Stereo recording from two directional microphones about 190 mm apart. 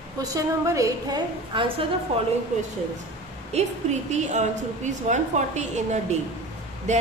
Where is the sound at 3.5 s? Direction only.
35° right (ahead or behind).